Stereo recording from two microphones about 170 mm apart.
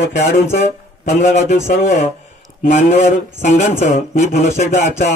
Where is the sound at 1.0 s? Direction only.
45° left (ahead or behind).